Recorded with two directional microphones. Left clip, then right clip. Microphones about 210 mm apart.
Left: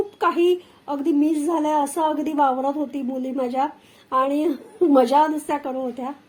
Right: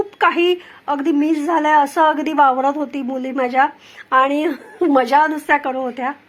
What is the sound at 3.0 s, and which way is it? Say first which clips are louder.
Speech: right 4 dB; 35° right (ahead or behind).